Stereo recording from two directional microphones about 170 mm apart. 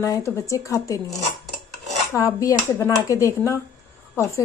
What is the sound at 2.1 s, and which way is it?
Speech, 15° left (ahead or behind).